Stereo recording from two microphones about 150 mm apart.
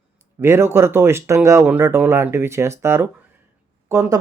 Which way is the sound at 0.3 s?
15° right (ahead or behind).